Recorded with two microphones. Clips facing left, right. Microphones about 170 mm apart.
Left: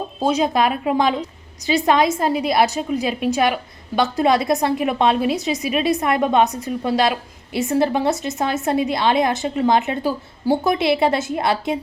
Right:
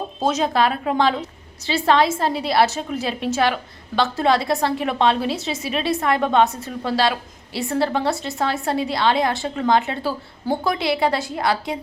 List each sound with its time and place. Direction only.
0.2 s a woman's voice: 10° left (ahead or behind)